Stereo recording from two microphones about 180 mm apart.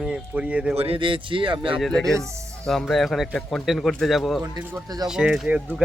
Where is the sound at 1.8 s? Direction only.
5° left (ahead or behind).